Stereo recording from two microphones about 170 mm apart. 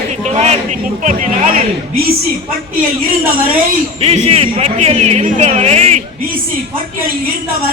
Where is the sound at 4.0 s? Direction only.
35° right (ahead or behind).